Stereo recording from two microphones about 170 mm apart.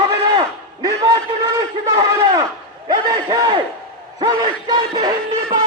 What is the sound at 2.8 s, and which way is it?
Music, 25° right (ahead or behind).